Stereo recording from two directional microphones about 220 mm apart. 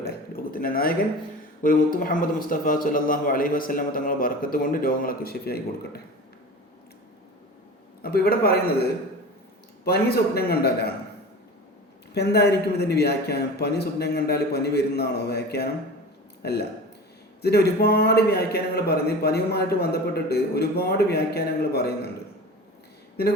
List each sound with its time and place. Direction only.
0.0 s a sound: 45° left (ahead or behind)
1.6 s a man's voice: 40° left (ahead or behind)
8.0 s a man's voice: 45° left (ahead or behind)
9.8 s a man's voice: 45° left (ahead or behind)
12.1 s a man's voice: 50° left (ahead or behind)